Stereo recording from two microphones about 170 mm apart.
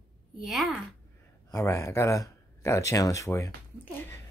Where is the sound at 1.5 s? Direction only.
15° left (ahead or behind).